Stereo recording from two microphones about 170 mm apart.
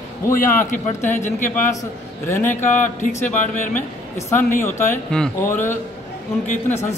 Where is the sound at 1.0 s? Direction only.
45° left (ahead or behind).